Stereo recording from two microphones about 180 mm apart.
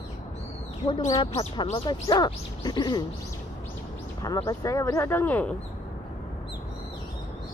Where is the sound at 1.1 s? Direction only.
20° left (ahead or behind).